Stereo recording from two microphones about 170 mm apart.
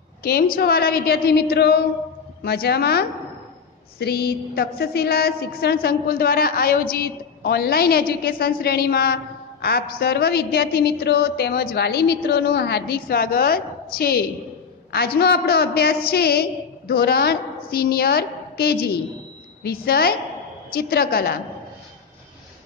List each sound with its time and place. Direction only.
0.2 s a woman's voice: 65° left (ahead or behind)